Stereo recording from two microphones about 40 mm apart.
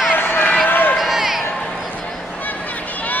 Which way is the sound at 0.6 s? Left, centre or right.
Left.